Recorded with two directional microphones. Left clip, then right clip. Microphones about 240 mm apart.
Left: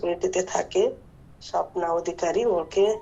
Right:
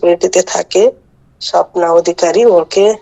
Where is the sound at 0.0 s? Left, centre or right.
Right.